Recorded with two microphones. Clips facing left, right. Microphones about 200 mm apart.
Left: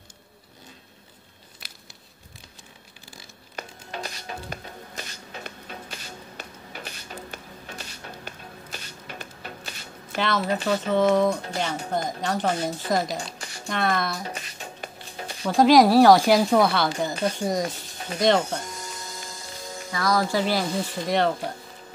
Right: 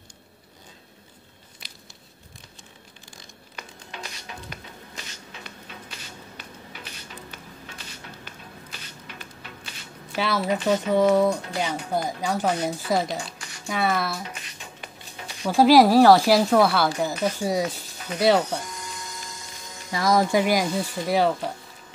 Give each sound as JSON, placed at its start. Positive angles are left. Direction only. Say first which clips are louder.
{"t": 3.5, "sound": "music", "louder": "left 5 dB", "side_deg": 40}
{"t": 8.6, "sound": "a sound", "louder": "left 3 dB", "side_deg": 45}
{"t": 10.1, "sound": "speech", "louder": "even", "side_deg": -5}
{"t": 13.4, "sound": "a sound", "louder": "left 3 dB", "side_deg": 30}
{"t": 13.7, "sound": "speech", "louder": "right 1 dB", "side_deg": -5}
{"t": 14.2, "sound": "music", "louder": "left 4 dB", "side_deg": 40}
{"t": 15.4, "sound": "a woman's voice", "louder": "right 1 dB", "side_deg": -5}
{"t": 19.9, "sound": "speech", "louder": "right 3 dB", "side_deg": -20}